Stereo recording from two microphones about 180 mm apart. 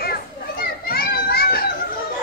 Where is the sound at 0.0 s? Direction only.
55° left (ahead or behind).